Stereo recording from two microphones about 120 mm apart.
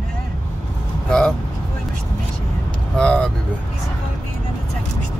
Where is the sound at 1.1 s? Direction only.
5° left (ahead or behind).